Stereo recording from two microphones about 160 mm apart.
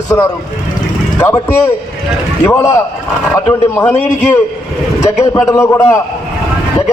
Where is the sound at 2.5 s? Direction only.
20° left (ahead or behind).